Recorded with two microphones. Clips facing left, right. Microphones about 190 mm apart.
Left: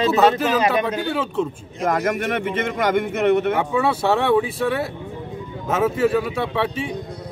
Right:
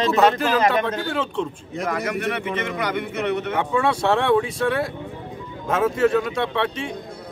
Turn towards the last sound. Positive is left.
turn(degrees=5)  # may be behind; listen again after turning